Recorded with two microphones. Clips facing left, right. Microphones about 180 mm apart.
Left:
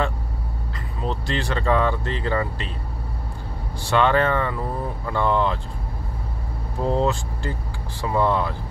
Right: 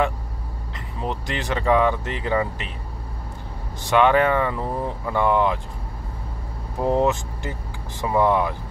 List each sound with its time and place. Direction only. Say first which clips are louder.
0.7 s speech: even; 15° right (ahead or behind)
3.8 s speech: right 2 dB; 15° right (ahead or behind)
6.8 s speech: right 2 dB; 20° right (ahead or behind)